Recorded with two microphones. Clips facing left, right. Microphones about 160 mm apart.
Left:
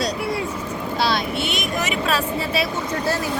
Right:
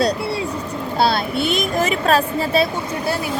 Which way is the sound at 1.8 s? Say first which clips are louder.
Right 5 dB; 40° right (ahead or behind).